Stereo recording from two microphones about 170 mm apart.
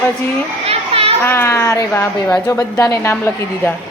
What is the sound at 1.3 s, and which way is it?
A woman's voice, 15° left (ahead or behind).